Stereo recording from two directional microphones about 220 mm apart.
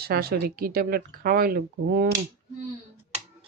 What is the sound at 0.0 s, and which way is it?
Speech, 45° right (ahead or behind).